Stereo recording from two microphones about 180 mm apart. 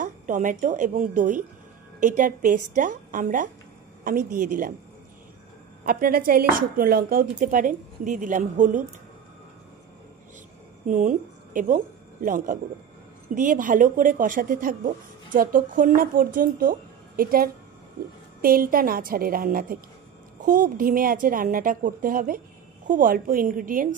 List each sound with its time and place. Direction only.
0.0 s a woman's voice: 45° right (ahead or behind)
5.9 s a woman's voice: 50° right (ahead or behind)
10.9 s a woman's voice: 45° right (ahead or behind)